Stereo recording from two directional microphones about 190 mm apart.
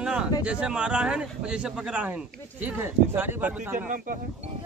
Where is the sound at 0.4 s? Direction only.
5° right (ahead or behind).